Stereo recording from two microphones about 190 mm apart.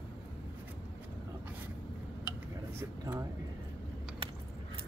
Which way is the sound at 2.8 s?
15° right (ahead or behind).